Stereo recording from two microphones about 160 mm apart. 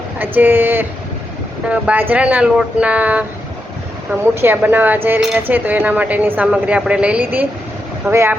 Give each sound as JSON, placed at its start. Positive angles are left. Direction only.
{"t": 0.2, "sound": "a woman's voice", "side_deg": -10}
{"t": 4.4, "sound": "a woman's voice", "side_deg": -15}